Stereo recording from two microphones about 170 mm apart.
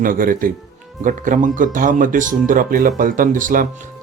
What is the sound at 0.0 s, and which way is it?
Speech, 55° right (ahead or behind).